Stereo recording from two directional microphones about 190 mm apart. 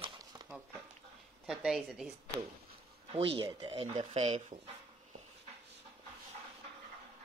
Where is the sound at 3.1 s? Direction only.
30° right (ahead or behind).